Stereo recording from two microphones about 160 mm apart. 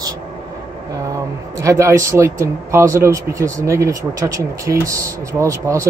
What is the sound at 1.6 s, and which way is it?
Speech, 20° right (ahead or behind).